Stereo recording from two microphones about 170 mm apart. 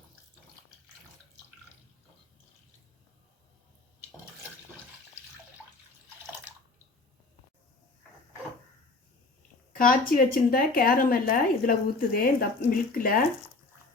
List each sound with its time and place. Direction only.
9.7 s speech: 60° left (ahead or behind)